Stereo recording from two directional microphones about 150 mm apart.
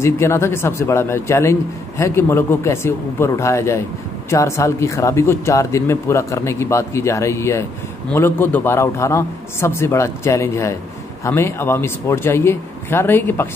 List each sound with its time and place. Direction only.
0.0 s a man's voice: 20° left (ahead or behind)